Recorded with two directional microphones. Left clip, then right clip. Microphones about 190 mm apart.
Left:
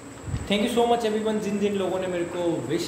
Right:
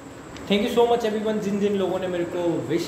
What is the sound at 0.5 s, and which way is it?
A man's voice, 5° left (ahead or behind).